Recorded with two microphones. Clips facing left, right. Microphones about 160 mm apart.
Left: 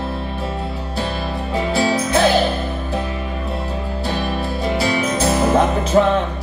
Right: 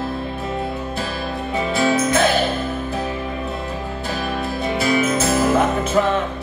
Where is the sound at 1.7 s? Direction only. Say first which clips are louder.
Right 1 dB; 30° left (ahead or behind).